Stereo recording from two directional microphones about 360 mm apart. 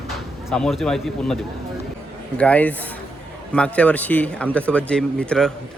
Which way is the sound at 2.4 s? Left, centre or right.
Centre.